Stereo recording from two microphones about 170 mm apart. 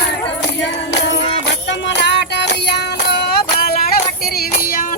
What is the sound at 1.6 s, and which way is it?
Music, 90° left.